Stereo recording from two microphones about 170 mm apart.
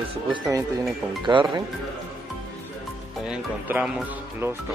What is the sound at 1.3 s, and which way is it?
Speech, 30° right (ahead or behind).